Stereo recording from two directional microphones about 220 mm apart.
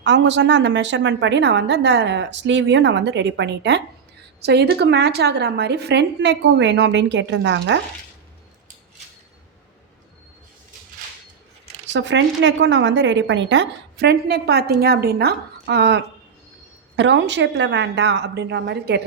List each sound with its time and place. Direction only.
0.0 s a woman's voice: 55° right (ahead or behind)
11.9 s a woman's voice: 55° right (ahead or behind)